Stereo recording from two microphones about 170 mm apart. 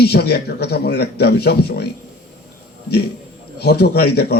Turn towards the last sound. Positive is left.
turn(degrees=70)  # may be behind; listen again after turning